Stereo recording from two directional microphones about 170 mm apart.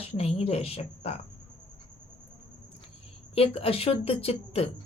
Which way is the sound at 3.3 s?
35° left (ahead or behind).